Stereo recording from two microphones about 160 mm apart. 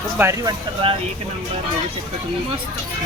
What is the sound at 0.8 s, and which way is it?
Speech, 35° right (ahead or behind).